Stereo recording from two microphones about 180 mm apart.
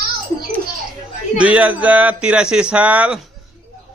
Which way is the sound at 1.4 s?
5° right (ahead or behind).